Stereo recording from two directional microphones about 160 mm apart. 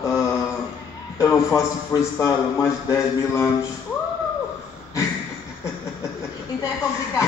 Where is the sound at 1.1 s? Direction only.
15° left (ahead or behind).